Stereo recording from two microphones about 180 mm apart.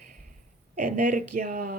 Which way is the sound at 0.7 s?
40° right (ahead or behind).